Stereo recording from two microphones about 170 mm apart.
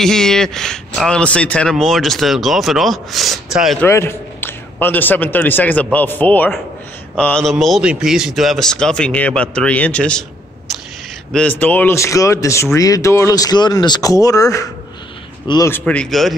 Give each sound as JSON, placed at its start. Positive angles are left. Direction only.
{"t": 0.0, "sound": "speech", "side_deg": 5}
{"t": 3.8, "sound": "a man's voice", "side_deg": 15}
{"t": 11.3, "sound": "a man's voice", "side_deg": 10}
{"t": 15.7, "sound": "speech", "side_deg": 5}